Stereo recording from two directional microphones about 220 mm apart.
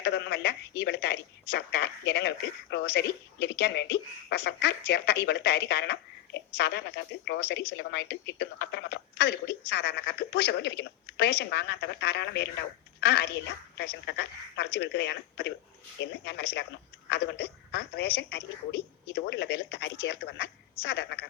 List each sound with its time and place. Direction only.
0.0 s a woman's voice: 50° left (ahead or behind)